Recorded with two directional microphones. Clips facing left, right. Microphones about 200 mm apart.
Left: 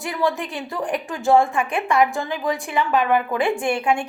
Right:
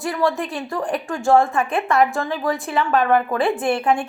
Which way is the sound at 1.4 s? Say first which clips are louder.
Right 1 dB; 15° left (ahead or behind).